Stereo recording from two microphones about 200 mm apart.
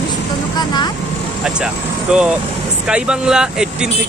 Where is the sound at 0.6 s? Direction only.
20° left (ahead or behind).